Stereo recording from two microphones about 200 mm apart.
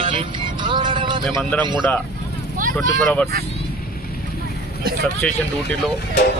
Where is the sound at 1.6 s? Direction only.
20° right (ahead or behind).